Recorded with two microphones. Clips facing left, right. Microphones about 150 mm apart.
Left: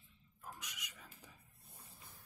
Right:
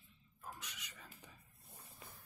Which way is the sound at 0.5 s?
10° left (ahead or behind).